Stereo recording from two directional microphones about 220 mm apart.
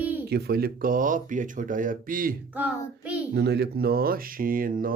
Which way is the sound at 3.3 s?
50° right (ahead or behind).